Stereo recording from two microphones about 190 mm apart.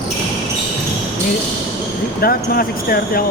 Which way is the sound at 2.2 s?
50° left (ahead or behind).